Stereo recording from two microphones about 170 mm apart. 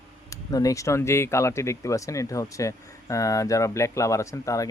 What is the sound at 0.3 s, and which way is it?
Speech, 20° left (ahead or behind).